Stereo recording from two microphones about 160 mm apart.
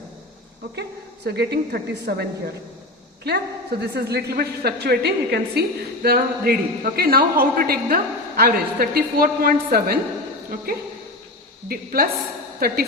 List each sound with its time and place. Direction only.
0.8 s a woman's voice: 90° right
2.1 s a woman's voice: 70° right (ahead or behind)
3.2 s a woman's voice: 90° right; by 10.0 s 70° right (ahead or behind)
11.7 s a woman's voice: 65° right (ahead or behind)